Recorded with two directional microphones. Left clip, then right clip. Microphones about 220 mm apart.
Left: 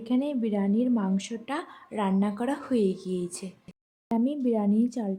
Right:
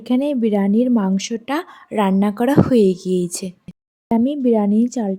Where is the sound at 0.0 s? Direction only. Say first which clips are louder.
Right 10 dB; 35° right (ahead or behind).